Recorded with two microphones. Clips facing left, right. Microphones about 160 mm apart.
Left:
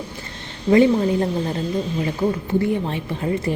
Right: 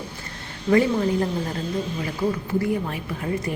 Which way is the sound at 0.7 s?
20° left (ahead or behind).